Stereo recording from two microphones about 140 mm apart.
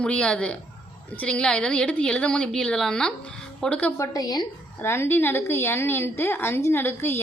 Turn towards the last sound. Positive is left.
turn(degrees=15)  # may be behind; listen again after turning